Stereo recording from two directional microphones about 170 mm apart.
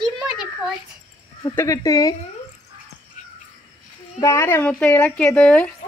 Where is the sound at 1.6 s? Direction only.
20° left (ahead or behind).